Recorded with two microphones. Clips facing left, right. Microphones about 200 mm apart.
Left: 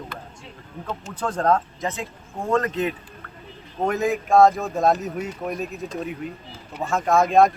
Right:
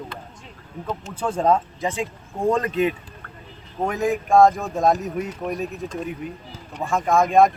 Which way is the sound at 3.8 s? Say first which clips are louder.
Even; centre (ahead or behind).